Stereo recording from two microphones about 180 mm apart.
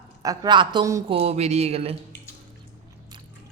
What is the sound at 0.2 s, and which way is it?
Speech, 20° right (ahead or behind).